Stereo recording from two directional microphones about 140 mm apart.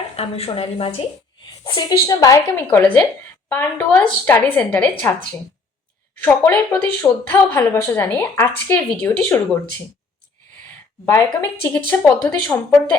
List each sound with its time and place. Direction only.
0.2 s a woman's voice: 45° left (ahead or behind)
1.6 s a woman's voice: 30° left (ahead or behind)
2.6 s a woman's voice: 10° left (ahead or behind)
6.2 s a woman's voice: 15° left (ahead or behind)
11.0 s a woman's voice: 20° left (ahead or behind)